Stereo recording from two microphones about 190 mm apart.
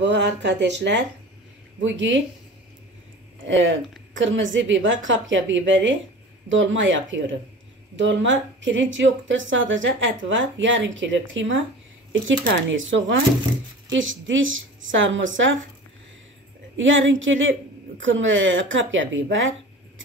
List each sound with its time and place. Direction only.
0.0 s speech: 65° right (ahead or behind)
3.4 s a woman's voice: 80° right
16.7 s a woman's voice: 85° right